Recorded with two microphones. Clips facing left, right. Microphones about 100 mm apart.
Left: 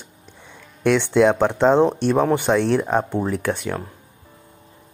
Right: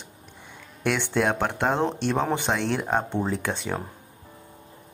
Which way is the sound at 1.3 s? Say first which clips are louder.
Left 8 dB; 15° left (ahead or behind).